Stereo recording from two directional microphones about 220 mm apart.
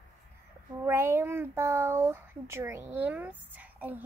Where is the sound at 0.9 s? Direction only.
10° right (ahead or behind).